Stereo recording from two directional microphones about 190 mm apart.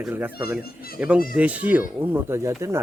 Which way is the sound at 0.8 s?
50° left (ahead or behind).